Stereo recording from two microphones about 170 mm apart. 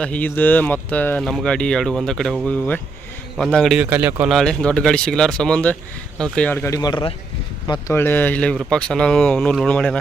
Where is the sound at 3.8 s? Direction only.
10° right (ahead or behind).